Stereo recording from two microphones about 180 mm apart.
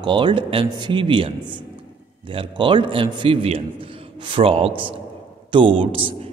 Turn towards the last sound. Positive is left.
turn(degrees=-30)  # may be behind; listen again after turning